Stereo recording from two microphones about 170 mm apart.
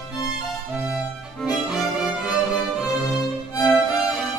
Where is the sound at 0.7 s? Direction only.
5° right (ahead or behind).